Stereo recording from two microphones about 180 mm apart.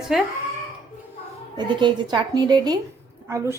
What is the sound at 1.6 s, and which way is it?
A woman's voice, 25° right (ahead or behind).